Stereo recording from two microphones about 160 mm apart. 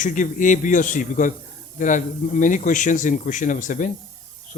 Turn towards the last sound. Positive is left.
turn(degrees=50)  # may be behind; listen again after turning